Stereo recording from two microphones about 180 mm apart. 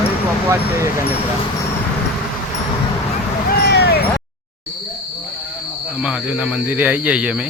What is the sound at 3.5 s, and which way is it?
Vehicle, 65° left (ahead or behind).